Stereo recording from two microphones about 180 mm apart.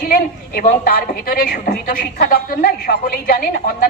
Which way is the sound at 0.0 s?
55° left (ahead or behind).